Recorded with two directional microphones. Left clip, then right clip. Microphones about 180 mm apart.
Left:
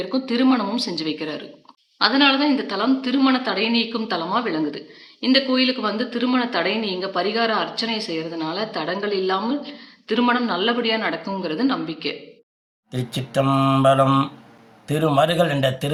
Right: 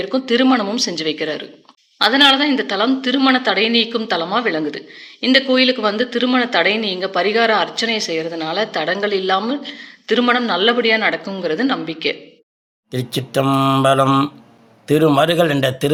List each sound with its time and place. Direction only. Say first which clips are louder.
0.0 s a woman's voice: right 5 dB; 15° right (ahead or behind)
12.9 s a man's voice: right 5 dB; 50° right (ahead or behind)